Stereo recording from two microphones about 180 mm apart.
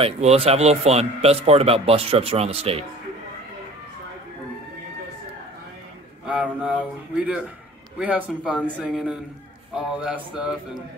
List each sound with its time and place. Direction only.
0.0 s a man's voice: 35° right (ahead or behind)
6.2 s a man's voice: 5° right (ahead or behind)